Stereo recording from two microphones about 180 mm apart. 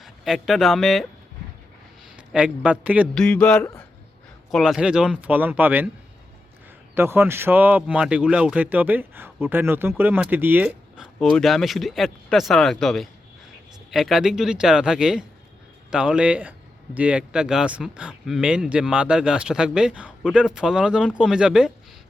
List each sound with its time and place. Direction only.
0.0 s speech: centre (ahead or behind)
2.1 s a man's voice: 5° right (ahead or behind)
3.2 s speech: 5° left (ahead or behind); by 5.9 s 10° right (ahead or behind)
6.9 s speech: 15° right (ahead or behind)